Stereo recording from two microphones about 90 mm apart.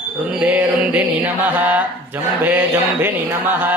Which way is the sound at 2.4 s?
20° right (ahead or behind).